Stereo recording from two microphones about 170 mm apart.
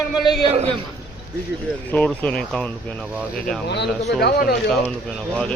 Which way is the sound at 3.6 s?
80° left.